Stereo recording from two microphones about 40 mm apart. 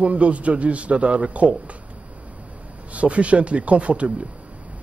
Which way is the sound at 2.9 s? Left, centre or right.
Right.